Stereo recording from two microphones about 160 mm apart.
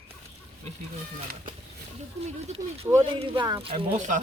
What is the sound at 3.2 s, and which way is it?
Speech, 35° right (ahead or behind).